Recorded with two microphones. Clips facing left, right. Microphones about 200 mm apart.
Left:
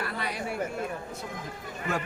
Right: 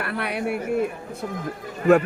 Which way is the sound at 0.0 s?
65° right (ahead or behind).